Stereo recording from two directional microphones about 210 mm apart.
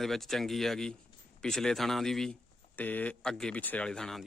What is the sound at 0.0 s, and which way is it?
Speech, centre (ahead or behind).